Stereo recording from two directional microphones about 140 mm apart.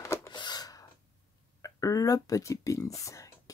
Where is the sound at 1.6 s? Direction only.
25° left (ahead or behind).